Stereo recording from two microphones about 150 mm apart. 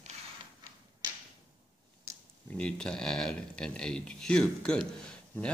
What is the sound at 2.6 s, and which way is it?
Speech, 5° left (ahead or behind).